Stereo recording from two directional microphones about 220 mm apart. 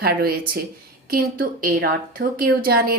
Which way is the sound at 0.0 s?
45° right (ahead or behind).